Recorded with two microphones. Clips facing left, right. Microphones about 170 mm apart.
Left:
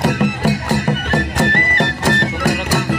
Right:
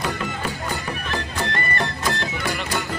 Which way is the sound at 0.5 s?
75° left (ahead or behind).